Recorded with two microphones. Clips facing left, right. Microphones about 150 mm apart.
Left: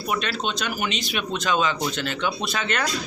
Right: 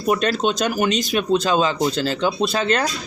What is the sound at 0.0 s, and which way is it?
Speech, 40° right (ahead or behind).